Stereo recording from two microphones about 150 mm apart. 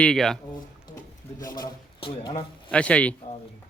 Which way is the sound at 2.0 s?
35° left (ahead or behind).